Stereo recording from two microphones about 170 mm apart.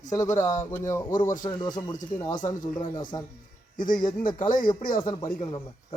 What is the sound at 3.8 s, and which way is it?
Speech, 50° left (ahead or behind).